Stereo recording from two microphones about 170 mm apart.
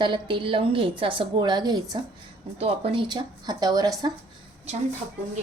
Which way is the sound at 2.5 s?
35° right (ahead or behind).